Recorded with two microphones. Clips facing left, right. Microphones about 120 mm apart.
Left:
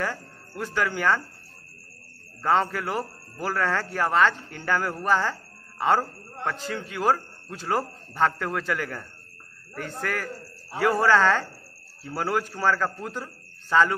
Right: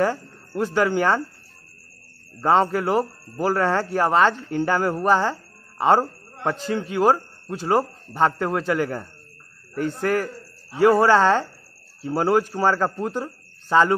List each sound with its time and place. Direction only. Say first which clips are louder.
0.0 s speech: right 8 dB; 25° right (ahead or behind)
2.4 s speech: right 5 dB; 25° right (ahead or behind)